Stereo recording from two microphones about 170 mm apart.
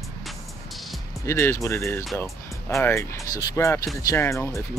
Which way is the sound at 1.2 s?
15° left (ahead or behind).